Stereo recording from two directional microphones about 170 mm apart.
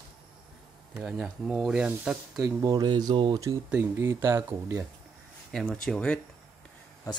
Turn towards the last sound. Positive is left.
turn(degrees=5)  # may be behind; listen again after turning